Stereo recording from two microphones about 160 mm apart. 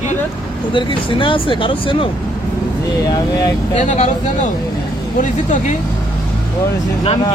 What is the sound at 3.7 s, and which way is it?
Speech, 45° left (ahead or behind).